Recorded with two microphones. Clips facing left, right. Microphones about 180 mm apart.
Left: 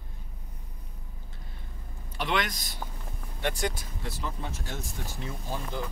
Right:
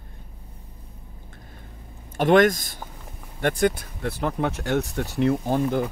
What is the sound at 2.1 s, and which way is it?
Speech, 45° right (ahead or behind).